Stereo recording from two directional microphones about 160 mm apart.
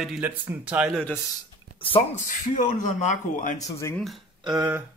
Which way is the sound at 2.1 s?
50° left (ahead or behind).